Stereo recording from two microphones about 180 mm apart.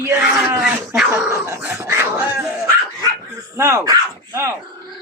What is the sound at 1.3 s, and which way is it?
Dog, 15° right (ahead or behind).